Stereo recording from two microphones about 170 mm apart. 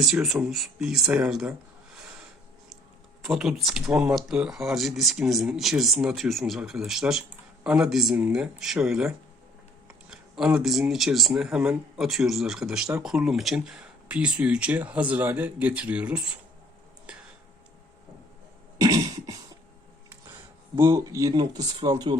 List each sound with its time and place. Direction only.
0.0 s speech: centre (ahead or behind)
3.2 s speech: centre (ahead or behind)
18.8 s cough: 25° right (ahead or behind)
20.7 s speech: 15° right (ahead or behind)